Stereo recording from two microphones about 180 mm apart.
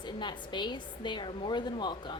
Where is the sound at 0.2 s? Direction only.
25° left (ahead or behind).